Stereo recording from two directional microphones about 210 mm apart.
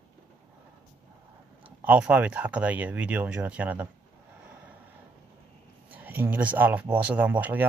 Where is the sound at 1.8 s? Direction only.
5° right (ahead or behind).